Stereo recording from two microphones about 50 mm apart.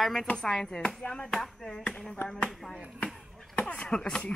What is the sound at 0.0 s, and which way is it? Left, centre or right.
Speech, centre.